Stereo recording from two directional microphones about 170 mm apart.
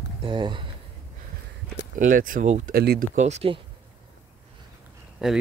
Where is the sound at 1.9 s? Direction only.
55° right (ahead or behind).